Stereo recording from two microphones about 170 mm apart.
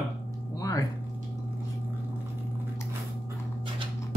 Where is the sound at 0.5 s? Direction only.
20° left (ahead or behind).